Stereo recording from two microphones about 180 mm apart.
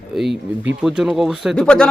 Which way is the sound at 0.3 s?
80° right.